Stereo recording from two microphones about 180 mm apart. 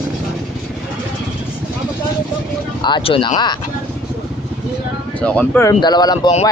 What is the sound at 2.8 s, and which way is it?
Speech, 30° left (ahead or behind).